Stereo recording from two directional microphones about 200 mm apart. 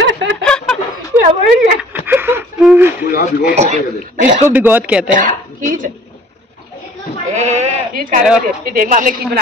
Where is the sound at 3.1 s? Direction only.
45° left (ahead or behind).